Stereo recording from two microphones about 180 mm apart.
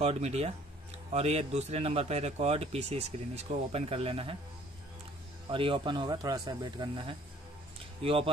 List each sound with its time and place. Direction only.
0.0 s speech: 35° right (ahead or behind)
5.5 s speech: 30° right (ahead or behind)